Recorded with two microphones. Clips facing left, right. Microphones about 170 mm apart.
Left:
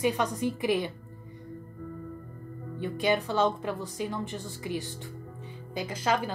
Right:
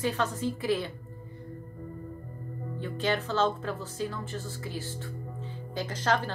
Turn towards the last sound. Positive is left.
turn(degrees=10)  # may be behind; listen again after turning